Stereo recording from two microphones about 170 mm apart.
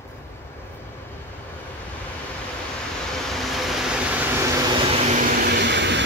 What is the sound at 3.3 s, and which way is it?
Vehicle, centre (ahead or behind).